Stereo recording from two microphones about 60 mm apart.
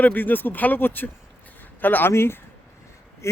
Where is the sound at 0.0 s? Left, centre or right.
Left.